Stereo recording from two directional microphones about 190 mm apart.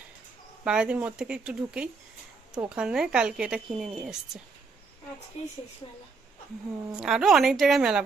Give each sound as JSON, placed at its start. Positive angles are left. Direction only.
{"t": 0.6, "sound": "speech", "side_deg": -5}
{"t": 5.8, "sound": "a woman's voice", "side_deg": 20}
{"t": 6.9, "sound": "speech", "side_deg": -5}